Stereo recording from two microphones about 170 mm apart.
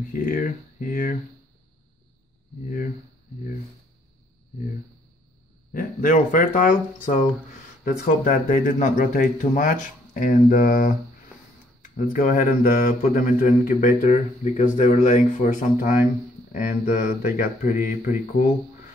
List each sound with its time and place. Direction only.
0.1 s speech: 55° left (ahead or behind)
5.7 s speech: 50° left (ahead or behind)
16.5 s speech: 50° left (ahead or behind)